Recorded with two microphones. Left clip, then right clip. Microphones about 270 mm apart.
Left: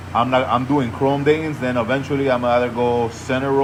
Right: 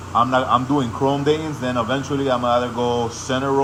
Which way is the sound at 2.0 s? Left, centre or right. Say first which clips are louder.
Left 2 dB; centre.